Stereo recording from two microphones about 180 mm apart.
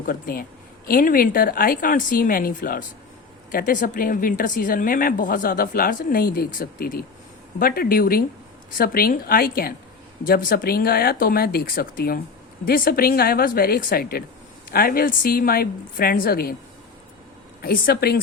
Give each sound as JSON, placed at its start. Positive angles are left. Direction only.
{"t": 0.0, "sound": "speech", "side_deg": 50}
{"t": 17.6, "sound": "speech", "side_deg": 60}